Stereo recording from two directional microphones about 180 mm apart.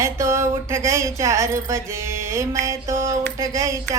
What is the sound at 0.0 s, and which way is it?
A woman's voice, 15° right (ahead or behind).